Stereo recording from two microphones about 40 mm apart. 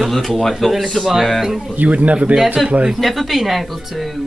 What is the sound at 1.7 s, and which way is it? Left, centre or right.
Speech, right.